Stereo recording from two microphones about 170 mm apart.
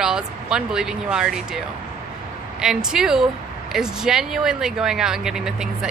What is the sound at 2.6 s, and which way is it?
Speech, 5° right (ahead or behind).